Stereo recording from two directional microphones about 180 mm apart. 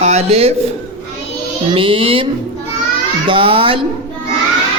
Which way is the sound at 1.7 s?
30° right (ahead or behind).